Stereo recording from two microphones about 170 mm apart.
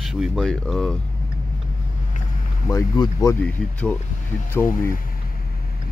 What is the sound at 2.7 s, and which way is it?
Speech, 20° left (ahead or behind).